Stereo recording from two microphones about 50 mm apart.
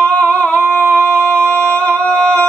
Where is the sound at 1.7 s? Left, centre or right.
Left.